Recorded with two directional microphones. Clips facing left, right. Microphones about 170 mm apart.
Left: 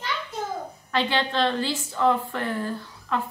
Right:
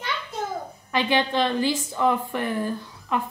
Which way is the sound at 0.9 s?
15° right (ahead or behind).